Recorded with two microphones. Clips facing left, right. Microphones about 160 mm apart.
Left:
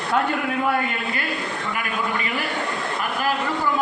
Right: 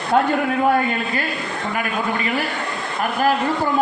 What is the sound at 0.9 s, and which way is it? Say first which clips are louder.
Speech: right 3 dB; 35° right (ahead or behind).